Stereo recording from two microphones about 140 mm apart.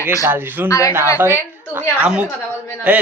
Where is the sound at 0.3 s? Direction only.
15° right (ahead or behind).